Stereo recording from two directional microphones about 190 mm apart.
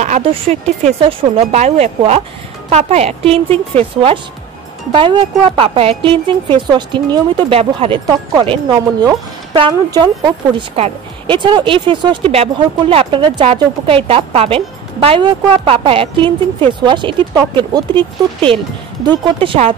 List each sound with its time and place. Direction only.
0.2 s a woman's voice: 30° right (ahead or behind)